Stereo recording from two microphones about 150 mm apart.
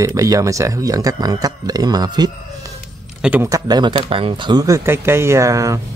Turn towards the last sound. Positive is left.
turn(degrees=-20)  # may be behind; listen again after turning